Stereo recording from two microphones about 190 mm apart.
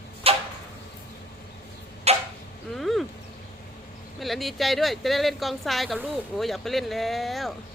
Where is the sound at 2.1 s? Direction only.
35° right (ahead or behind).